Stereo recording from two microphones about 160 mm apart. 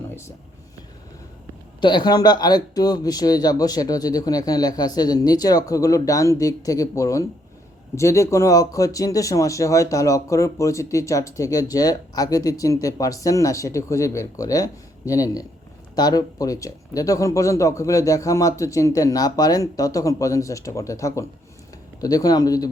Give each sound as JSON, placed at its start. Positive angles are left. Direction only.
{"t": 1.8, "sound": "speech", "side_deg": 30}